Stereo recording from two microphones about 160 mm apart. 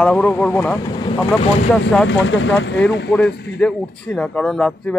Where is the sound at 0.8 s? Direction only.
30° left (ahead or behind).